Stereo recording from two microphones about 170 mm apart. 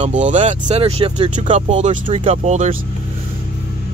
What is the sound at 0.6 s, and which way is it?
Speech, 35° right (ahead or behind).